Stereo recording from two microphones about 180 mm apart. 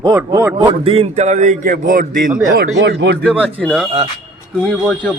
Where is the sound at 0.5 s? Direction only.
30° right (ahead or behind).